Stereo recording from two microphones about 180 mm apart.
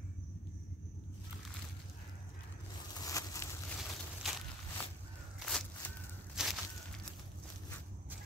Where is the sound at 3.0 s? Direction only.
20° left (ahead or behind).